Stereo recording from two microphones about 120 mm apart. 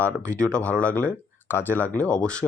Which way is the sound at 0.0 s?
10° left (ahead or behind).